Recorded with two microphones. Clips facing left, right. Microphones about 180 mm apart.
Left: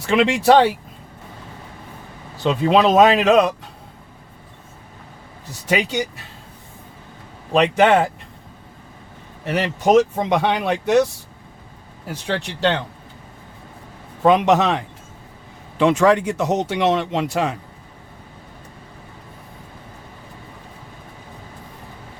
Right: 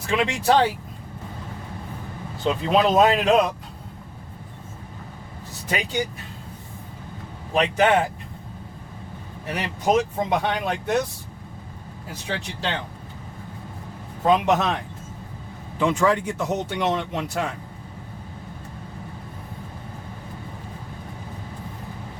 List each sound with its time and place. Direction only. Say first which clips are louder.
0.2 s speech: left 7 dB; 85° left
2.4 s speech: left 4 dB; 75° left (ahead or behind)
5.6 s speech: left 5 dB; 75° left (ahead or behind)
7.5 s speech: left 5 dB; 75° left (ahead or behind)
9.5 s speech: left 6 dB; 75° left (ahead or behind)
12.3 s speech: left 8 dB; 70° left (ahead or behind)
14.3 s speech: left 4 dB; 85° left
15.8 s speech: left 5 dB; 80° left